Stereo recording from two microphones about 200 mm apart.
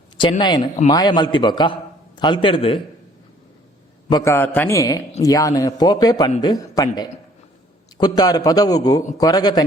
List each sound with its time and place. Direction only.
0.2 s speech: 20° left (ahead or behind)
4.1 s a man's voice: 15° left (ahead or behind)